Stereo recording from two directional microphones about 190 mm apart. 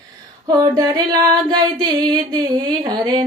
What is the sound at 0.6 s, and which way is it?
Singing, 20° right (ahead or behind).